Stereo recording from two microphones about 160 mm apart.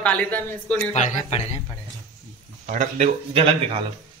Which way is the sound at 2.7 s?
45° right (ahead or behind).